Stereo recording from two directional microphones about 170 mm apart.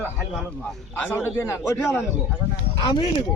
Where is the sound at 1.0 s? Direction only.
10° left (ahead or behind).